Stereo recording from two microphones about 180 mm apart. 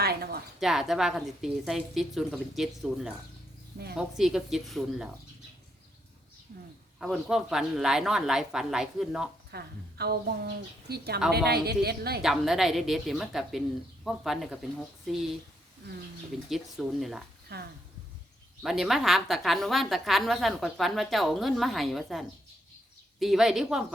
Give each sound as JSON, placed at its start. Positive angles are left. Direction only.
{"t": 0.0, "sound": "a sound", "side_deg": -60}
{"t": 0.6, "sound": "a woman's voice", "side_deg": 0}
{"t": 6.5, "sound": "a sound", "side_deg": -60}
{"t": 7.0, "sound": "a woman's voice", "side_deg": -5}
{"t": 9.5, "sound": "a woman's voice", "side_deg": -60}
{"t": 12.2, "sound": "a woman's voice", "side_deg": 0}
{"t": 16.5, "sound": "a woman's voice", "side_deg": 0}
{"t": 17.5, "sound": "a woman's voice", "side_deg": -65}
{"t": 18.6, "sound": "a woman's voice", "side_deg": 0}